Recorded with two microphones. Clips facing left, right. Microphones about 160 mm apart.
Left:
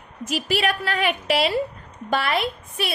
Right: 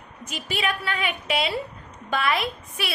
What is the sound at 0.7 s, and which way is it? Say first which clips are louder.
Speech: left 4 dB; 40° left (ahead or behind).